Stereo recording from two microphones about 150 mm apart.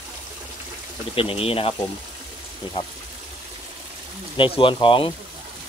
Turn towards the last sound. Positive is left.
turn(degrees=35)  # may be behind; listen again after turning